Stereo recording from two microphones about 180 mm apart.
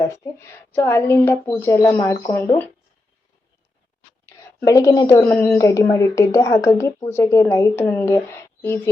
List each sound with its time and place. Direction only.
0.0 s a woman's voice: 15° left (ahead or behind)
4.3 s a woman's voice: 15° left (ahead or behind)